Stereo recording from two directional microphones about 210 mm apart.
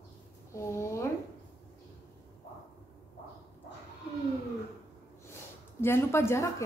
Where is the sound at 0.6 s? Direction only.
15° left (ahead or behind).